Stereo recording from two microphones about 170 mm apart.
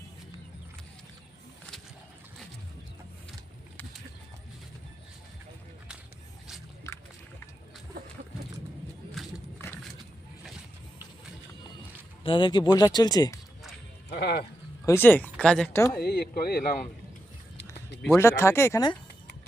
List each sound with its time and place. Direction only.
12.2 s speech: 30° left (ahead or behind)
14.1 s speech: 70° left (ahead or behind)
14.8 s speech: 10° left (ahead or behind)
16.0 s speech: 70° left (ahead or behind)
18.2 s speech: 15° left (ahead or behind)